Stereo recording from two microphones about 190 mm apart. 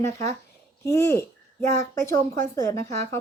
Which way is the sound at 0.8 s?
15° left (ahead or behind).